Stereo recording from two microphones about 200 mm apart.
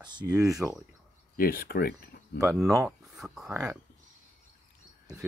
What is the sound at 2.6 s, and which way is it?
Speech, 15° right (ahead or behind).